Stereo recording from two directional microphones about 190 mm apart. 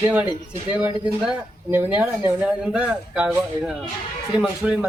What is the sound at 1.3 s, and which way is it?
Speech, 10° right (ahead or behind).